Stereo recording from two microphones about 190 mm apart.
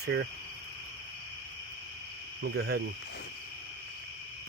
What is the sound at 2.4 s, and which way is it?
Speech, 60° right (ahead or behind).